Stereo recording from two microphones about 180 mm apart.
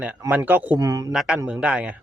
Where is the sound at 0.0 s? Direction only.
10° right (ahead or behind).